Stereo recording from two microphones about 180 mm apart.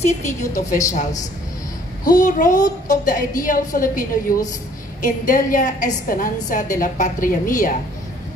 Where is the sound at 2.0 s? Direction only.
45° left (ahead or behind).